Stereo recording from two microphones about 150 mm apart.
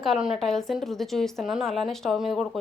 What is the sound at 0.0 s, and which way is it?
A woman's voice, centre (ahead or behind).